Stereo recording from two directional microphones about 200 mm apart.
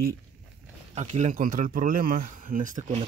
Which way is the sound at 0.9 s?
35° right (ahead or behind).